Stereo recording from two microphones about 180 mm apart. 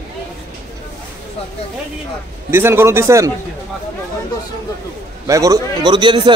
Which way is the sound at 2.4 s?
15° right (ahead or behind).